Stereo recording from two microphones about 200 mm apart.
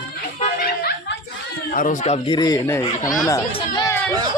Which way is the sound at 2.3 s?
20° left (ahead or behind).